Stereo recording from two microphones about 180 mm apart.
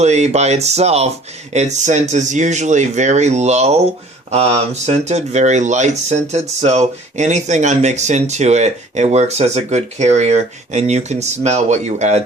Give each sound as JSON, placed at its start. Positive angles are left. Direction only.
{"t": 0.0, "sound": "speech", "side_deg": -40}